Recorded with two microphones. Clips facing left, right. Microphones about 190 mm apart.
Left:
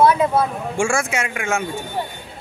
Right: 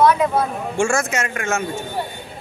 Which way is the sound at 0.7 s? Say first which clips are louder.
Right 2 dB; 10° left (ahead or behind).